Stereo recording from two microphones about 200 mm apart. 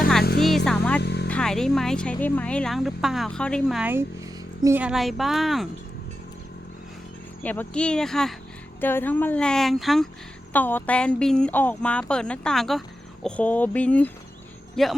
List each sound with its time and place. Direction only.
0.3 s a sound: centre (ahead or behind)
1.0 s music: 55° left (ahead or behind)
1.3 s speech: 5° left (ahead or behind)
7.4 s speech: 10° left (ahead or behind)